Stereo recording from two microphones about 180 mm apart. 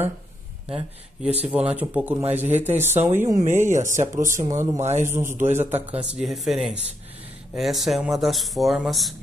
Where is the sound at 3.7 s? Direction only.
45° right (ahead or behind).